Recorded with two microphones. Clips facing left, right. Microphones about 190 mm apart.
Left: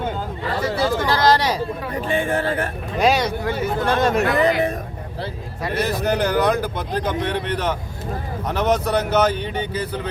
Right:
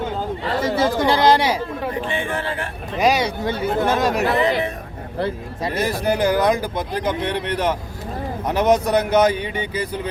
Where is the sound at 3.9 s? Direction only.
Centre (ahead or behind).